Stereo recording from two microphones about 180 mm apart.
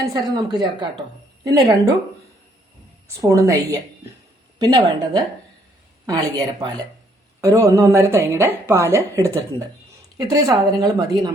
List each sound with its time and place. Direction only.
0.0 s a woman's voice: 20° right (ahead or behind)
3.2 s a woman's voice: 20° right (ahead or behind)